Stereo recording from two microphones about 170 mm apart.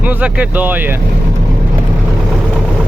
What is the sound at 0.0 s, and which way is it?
Speech, 10° right (ahead or behind).